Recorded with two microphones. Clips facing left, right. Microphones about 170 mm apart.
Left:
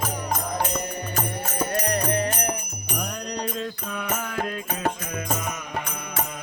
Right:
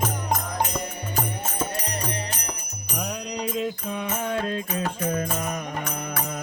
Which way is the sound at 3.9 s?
25° right (ahead or behind).